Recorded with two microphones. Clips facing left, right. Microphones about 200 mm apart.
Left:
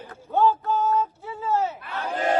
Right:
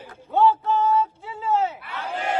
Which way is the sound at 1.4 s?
10° right (ahead or behind).